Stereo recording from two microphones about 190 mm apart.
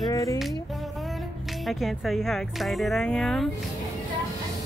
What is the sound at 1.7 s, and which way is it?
A woman's voice, centre (ahead or behind).